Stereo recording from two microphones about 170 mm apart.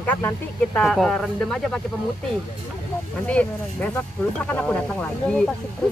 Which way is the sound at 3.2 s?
10° left (ahead or behind).